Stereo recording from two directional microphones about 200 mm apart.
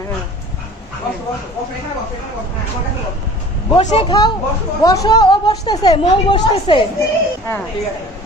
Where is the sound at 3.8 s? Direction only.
30° left (ahead or behind).